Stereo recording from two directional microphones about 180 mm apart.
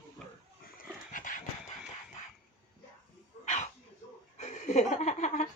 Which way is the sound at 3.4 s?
40° left (ahead or behind).